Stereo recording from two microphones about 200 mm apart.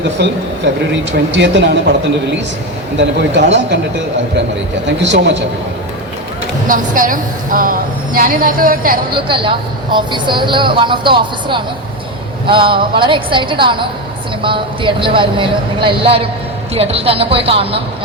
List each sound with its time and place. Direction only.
1.1 s speech: 60° right (ahead or behind)
4.9 s speech: 60° right (ahead or behind)
6.7 s a woman's voice: 40° right (ahead or behind)
9.1 s speech: 25° right (ahead or behind)